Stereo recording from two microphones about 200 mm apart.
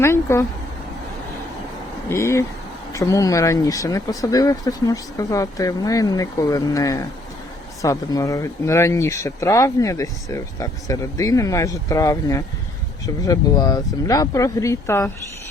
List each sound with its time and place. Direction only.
0.0 s speech: 15° left (ahead or behind)
2.0 s speech: 15° left (ahead or behind)